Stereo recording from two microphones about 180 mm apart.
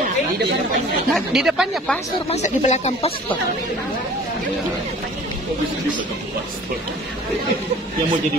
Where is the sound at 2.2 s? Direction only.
40° left (ahead or behind).